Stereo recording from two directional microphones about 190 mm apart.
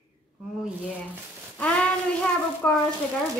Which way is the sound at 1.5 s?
5° left (ahead or behind).